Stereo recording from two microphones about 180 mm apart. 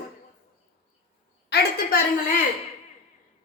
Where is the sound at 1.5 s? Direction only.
60° left (ahead or behind).